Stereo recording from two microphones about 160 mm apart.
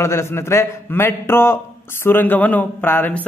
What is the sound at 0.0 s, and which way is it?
Speech, 15° left (ahead or behind).